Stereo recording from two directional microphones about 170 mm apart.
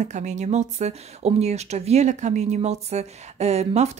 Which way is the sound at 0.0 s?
45° right (ahead or behind).